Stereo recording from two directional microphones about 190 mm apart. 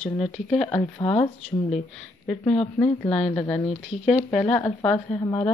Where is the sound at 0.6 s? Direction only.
25° left (ahead or behind).